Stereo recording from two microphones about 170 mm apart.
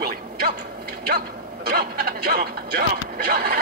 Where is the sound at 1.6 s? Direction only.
65° right (ahead or behind).